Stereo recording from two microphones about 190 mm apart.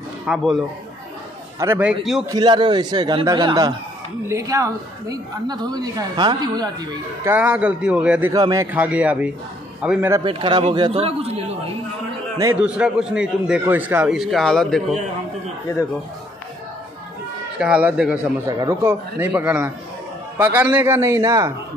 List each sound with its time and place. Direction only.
0.3 s a man's voice: centre (ahead or behind)
1.6 s a man's voice: 10° right (ahead or behind)
2.2 s a woman's voice: 20° right (ahead or behind)
7.3 s a man's voice: 10° right (ahead or behind)
8.3 s a woman's voice: 20° right (ahead or behind)
8.7 s a man's voice: 5° right (ahead or behind)
10.2 s a man's voice: 25° right (ahead or behind)
12.5 s a man's voice: 5° right (ahead or behind)
17.6 s a man's voice: 5° right (ahead or behind)
18.6 s a man's voice: 15° right (ahead or behind)